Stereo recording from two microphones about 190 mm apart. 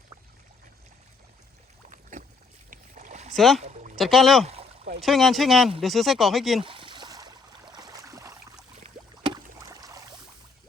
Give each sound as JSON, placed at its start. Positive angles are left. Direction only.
{"t": 1.9, "sound": "boat", "side_deg": -40}
{"t": 3.3, "sound": "speech", "side_deg": 0}
{"t": 3.6, "sound": "pour", "side_deg": -35}
{"t": 3.9, "sound": "speech", "side_deg": 0}
{"t": 6.7, "sound": "a sound", "side_deg": -25}
{"t": 9.2, "sound": "rowboat", "side_deg": -20}